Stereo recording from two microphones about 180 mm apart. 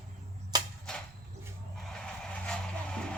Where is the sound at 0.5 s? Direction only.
20° right (ahead or behind).